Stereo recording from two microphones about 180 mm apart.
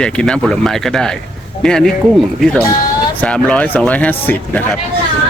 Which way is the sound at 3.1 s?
5° left (ahead or behind).